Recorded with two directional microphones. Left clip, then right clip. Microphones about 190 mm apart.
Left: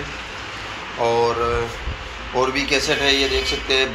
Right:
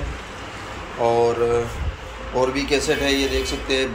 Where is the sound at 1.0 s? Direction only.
10° right (ahead or behind).